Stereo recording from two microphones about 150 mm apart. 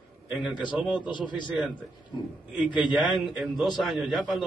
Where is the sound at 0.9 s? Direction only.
30° left (ahead or behind).